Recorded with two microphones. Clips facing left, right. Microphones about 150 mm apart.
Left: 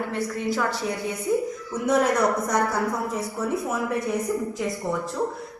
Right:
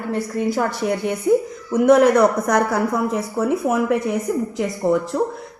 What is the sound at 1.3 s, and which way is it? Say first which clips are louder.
A man's voice: right 7 dB; 70° right (ahead or behind).